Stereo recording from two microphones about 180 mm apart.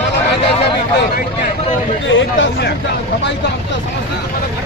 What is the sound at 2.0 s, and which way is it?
Speech, 90° left.